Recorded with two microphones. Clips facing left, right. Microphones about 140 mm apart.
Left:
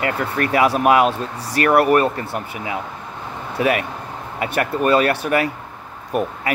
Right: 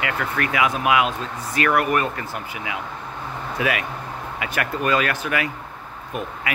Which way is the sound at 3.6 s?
35° left (ahead or behind).